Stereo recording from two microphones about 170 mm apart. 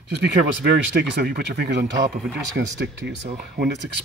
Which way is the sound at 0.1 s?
90° right.